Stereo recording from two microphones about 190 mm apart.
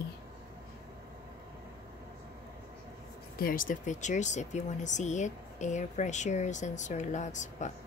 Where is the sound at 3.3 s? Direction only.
50° left (ahead or behind).